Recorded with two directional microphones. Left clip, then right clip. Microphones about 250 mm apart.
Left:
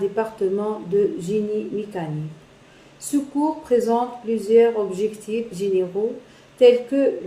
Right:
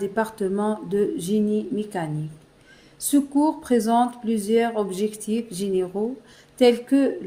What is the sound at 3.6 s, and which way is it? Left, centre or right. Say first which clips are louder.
A woman's voice: left 1 dB; right.